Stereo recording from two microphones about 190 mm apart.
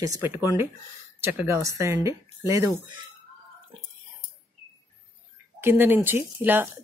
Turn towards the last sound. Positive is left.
turn(degrees=-10)  # may be behind; listen again after turning